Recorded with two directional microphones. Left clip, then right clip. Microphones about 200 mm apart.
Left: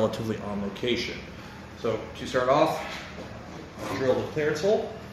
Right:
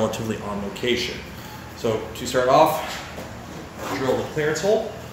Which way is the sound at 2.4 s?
20° right (ahead or behind).